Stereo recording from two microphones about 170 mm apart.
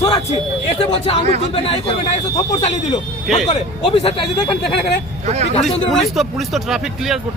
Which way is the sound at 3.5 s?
35° left (ahead or behind).